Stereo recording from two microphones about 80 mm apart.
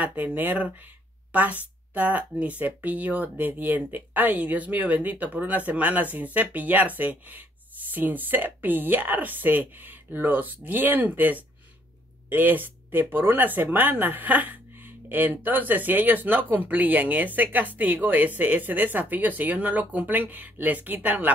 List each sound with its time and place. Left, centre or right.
0.0 s speech: right